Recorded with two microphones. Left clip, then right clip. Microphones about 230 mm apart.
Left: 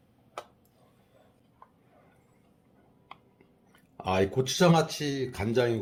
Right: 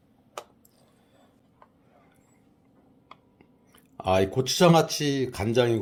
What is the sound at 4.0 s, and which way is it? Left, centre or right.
Speech, right.